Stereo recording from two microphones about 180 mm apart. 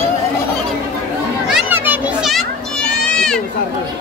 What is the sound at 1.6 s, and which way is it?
Children playing, 10° right (ahead or behind).